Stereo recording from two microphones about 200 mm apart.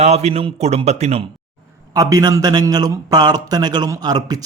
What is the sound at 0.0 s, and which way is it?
A man's voice, 30° right (ahead or behind).